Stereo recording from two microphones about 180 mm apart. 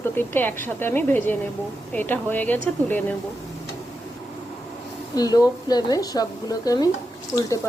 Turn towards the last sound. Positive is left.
turn(degrees=10)  # may be behind; listen again after turning